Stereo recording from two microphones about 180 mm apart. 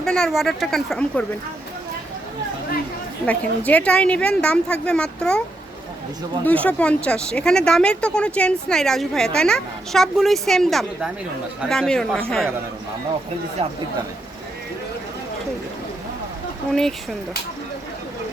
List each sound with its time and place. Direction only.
0.0 s speech: 5° left (ahead or behind)
3.2 s a woman's voice: 10° left (ahead or behind)
6.4 s speech: 10° left (ahead or behind)
13.6 s speech: 35° right (ahead or behind)